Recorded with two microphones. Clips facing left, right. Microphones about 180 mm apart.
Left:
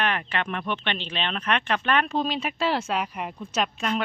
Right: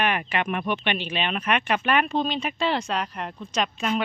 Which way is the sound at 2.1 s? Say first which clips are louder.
Right 1 dB; centre (ahead or behind).